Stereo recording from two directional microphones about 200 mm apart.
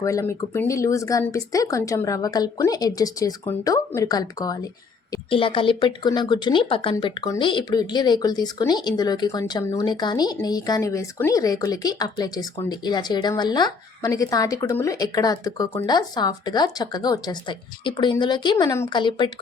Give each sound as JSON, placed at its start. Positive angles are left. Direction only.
{"t": 0.0, "sound": "speech", "side_deg": 15}